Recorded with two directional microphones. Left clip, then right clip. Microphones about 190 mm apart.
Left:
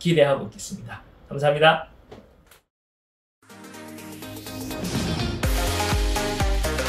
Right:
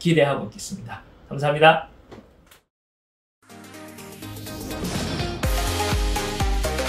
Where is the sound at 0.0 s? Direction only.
5° right (ahead or behind).